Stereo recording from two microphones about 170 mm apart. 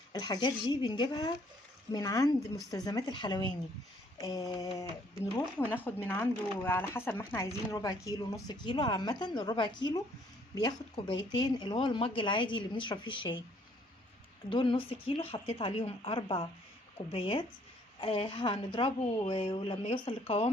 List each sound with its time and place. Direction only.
0.1 s speech: 25° left (ahead or behind)
5.7 s speech: 10° left (ahead or behind); by 13.4 s 30° left (ahead or behind)
14.5 s a woman's voice: 30° left (ahead or behind)